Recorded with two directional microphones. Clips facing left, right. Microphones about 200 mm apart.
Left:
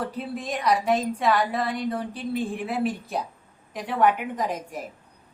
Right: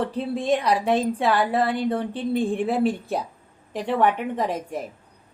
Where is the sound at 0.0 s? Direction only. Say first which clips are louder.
Right 5 dB; 30° right (ahead or behind).